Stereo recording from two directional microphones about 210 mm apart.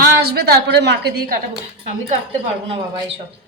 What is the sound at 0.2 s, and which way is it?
Speech, 50° right (ahead or behind).